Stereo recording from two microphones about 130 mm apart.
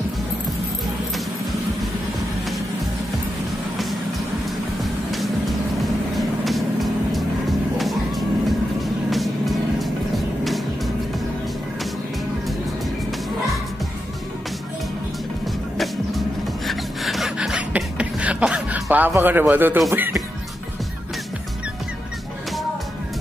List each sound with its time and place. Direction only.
6.1 s vehicle: centre (ahead or behind)
7.7 s music: centre (ahead or behind)
15.8 s music: centre (ahead or behind)
20.0 s speech: 20° right (ahead or behind)